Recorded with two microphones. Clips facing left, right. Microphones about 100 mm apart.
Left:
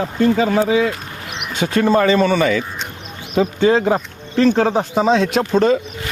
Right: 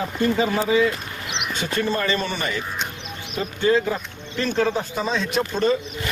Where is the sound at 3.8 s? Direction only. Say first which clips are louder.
Left 8 dB; 65° left (ahead or behind).